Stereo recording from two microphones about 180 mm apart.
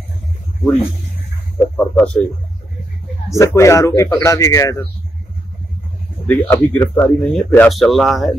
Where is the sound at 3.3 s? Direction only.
15° left (ahead or behind).